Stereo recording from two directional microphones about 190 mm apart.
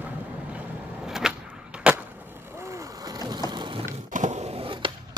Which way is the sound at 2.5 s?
15° right (ahead or behind).